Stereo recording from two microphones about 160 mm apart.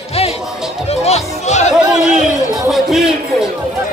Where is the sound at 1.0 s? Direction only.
45° left (ahead or behind).